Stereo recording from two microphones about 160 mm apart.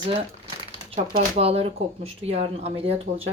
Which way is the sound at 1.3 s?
40° right (ahead or behind).